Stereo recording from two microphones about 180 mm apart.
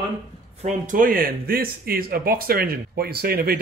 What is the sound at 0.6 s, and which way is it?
Speech, 45° right (ahead or behind).